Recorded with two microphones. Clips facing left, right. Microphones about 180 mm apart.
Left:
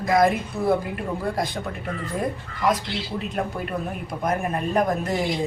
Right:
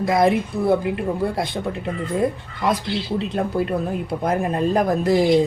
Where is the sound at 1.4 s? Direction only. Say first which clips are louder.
Right 4 dB; 25° right (ahead or behind).